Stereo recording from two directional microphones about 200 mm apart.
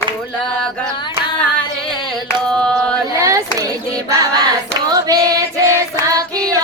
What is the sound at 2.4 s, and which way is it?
Chant, 5° left (ahead or behind).